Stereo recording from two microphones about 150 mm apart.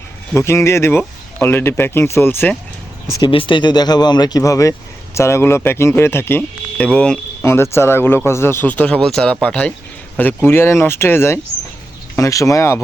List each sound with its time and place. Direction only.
0.3 s speech: 15° left (ahead or behind)
3.2 s speech: 35° left (ahead or behind)